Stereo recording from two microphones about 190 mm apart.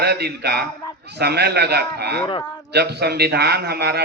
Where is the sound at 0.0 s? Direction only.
60° right (ahead or behind).